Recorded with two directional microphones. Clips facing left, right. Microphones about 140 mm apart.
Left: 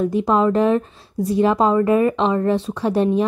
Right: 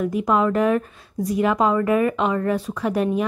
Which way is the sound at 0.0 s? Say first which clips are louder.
Left 3 dB; 30° left (ahead or behind).